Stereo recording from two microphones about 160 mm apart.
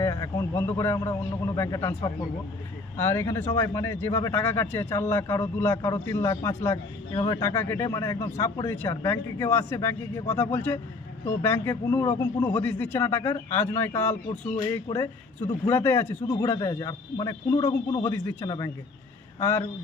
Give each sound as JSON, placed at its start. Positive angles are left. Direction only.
{"t": 0.0, "sound": "speech", "side_deg": 20}
{"t": 7.1, "sound": "speech", "side_deg": 30}
{"t": 15.6, "sound": "speech", "side_deg": 15}
{"t": 17.6, "sound": "a man's voice", "side_deg": 40}
{"t": 18.0, "sound": "speech", "side_deg": 20}